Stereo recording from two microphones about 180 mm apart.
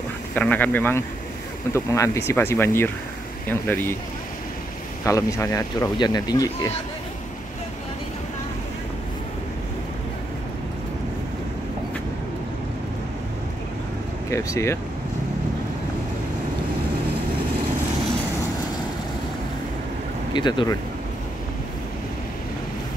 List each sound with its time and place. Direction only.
0.3 s speech: 10° left (ahead or behind)
5.0 s speech: 15° left (ahead or behind)
14.3 s speech: 15° left (ahead or behind)
20.3 s speech: 25° left (ahead or behind)